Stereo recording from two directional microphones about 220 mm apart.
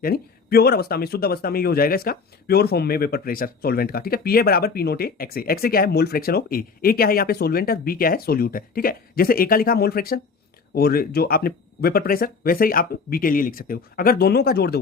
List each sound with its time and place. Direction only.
0.0 s speech: 45° left (ahead or behind)